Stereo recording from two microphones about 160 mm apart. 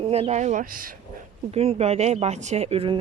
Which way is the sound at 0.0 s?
40° right (ahead or behind).